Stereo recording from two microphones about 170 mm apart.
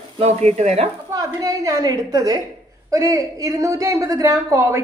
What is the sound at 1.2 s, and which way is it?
A woman's voice, 20° right (ahead or behind).